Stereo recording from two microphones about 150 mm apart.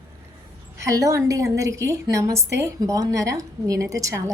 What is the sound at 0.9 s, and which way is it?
Speech, 20° right (ahead or behind).